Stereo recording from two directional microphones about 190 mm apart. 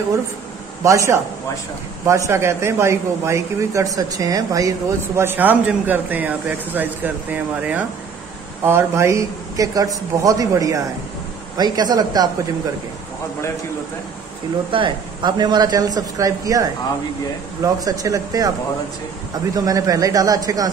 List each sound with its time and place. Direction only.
0.8 s speech: 15° right (ahead or behind)
14.7 s speech: 25° right (ahead or behind)
17.8 s speech: 20° right (ahead or behind)
19.5 s speech: 20° right (ahead or behind)